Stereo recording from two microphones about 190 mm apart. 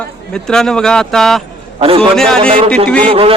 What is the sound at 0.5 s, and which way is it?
A man's voice, 5° left (ahead or behind).